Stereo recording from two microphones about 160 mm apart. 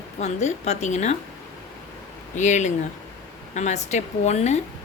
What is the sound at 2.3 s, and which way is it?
A woman's voice, 50° left (ahead or behind).